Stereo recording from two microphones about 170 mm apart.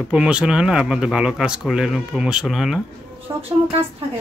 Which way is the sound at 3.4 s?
35° right (ahead or behind).